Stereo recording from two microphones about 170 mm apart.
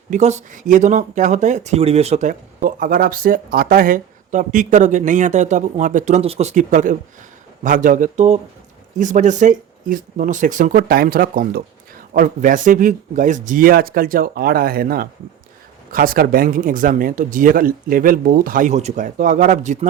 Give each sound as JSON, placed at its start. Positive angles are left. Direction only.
{"t": 0.1, "sound": "speech", "side_deg": -40}